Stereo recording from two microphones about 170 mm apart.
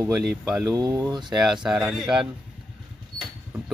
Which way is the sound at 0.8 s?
20° right (ahead or behind).